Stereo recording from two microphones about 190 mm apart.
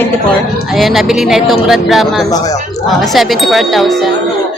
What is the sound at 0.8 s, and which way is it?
Speech, centre (ahead or behind).